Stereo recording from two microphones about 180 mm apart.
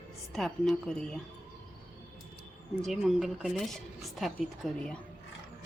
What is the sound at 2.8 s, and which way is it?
Speech, centre (ahead or behind).